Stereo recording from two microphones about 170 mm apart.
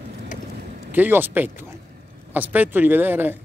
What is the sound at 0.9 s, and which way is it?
Speech, 10° right (ahead or behind).